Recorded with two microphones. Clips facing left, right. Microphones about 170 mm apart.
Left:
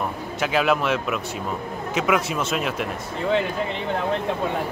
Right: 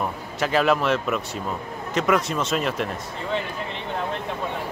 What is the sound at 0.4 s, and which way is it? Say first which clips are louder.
A man's voice: right 1 dB; centre (ahead or behind).